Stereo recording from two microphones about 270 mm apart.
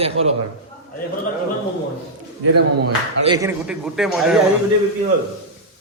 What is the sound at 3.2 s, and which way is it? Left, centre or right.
Speech, centre.